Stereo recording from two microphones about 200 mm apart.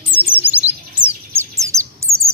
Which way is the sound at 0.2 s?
10° right (ahead or behind).